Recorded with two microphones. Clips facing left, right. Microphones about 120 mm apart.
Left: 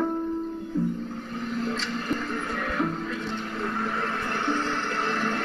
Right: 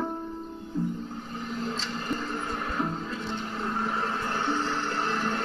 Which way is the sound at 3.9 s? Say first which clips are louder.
Left 1 dB; 15° right (ahead or behind).